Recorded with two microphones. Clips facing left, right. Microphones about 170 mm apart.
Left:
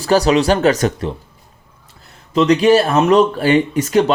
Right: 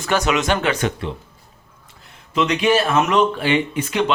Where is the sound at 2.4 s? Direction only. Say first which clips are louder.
Left 6 dB; 35° left (ahead or behind).